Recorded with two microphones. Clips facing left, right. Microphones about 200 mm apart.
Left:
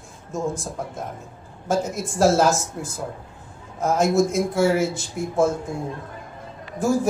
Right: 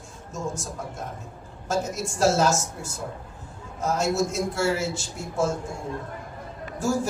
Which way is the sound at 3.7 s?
55° left (ahead or behind).